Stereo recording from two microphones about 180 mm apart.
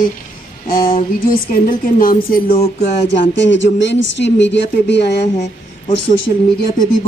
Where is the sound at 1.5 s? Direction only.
50° left (ahead or behind).